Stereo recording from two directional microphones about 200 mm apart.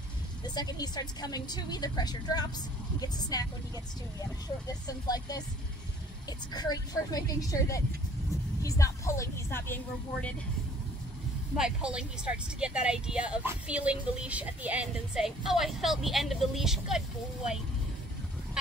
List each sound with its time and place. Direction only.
0.6 s a woman's voice: 20° left (ahead or behind)
11.5 s speech: 5° right (ahead or behind)